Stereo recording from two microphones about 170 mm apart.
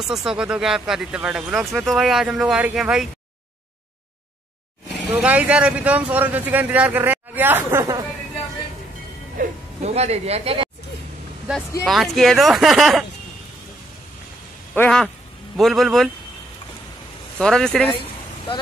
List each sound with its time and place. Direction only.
0.0 s speech: 5° right (ahead or behind)
5.1 s speech: 10° right (ahead or behind)
9.9 s speech: 40° right (ahead or behind)
11.8 s speech: centre (ahead or behind)
14.8 s speech: 5° left (ahead or behind)
17.4 s speech: 5° left (ahead or behind)